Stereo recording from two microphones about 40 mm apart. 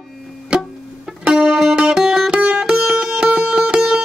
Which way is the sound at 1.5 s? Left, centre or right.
Centre.